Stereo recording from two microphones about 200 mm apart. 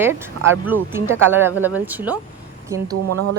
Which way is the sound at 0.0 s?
10° right (ahead or behind).